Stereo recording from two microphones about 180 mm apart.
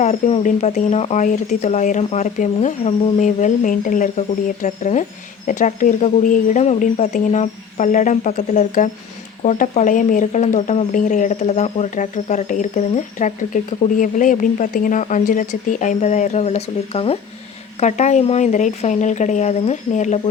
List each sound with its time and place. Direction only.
0.0 s speech: 35° left (ahead or behind)